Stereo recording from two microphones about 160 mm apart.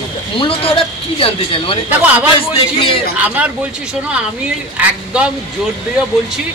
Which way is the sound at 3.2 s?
10° right (ahead or behind).